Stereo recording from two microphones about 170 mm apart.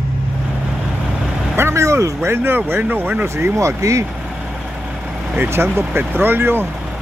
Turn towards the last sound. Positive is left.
turn(degrees=-10)  # may be behind; listen again after turning